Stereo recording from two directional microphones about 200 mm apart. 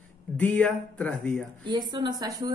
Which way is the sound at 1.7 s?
20° right (ahead or behind).